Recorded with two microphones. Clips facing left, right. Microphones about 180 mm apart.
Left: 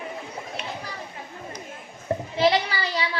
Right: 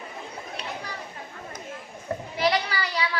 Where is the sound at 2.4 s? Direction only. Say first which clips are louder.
Left 3 dB; 25° left (ahead or behind).